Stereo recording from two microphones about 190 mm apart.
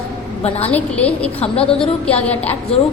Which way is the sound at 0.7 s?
5° left (ahead or behind).